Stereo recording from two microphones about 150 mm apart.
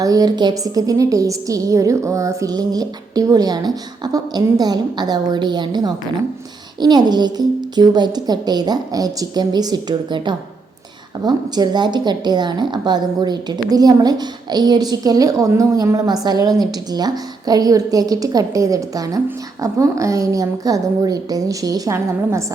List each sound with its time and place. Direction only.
0.0 s a woman's voice: 25° right (ahead or behind)